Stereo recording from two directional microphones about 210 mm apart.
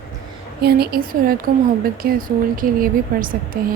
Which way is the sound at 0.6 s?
50° right (ahead or behind).